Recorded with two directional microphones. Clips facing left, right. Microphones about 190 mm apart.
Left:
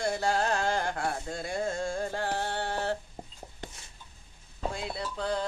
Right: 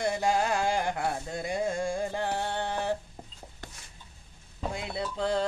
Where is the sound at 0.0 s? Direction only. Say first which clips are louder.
Right 1 dB; 15° right (ahead or behind).